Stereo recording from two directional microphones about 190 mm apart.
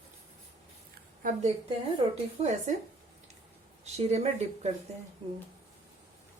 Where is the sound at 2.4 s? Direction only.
35° right (ahead or behind).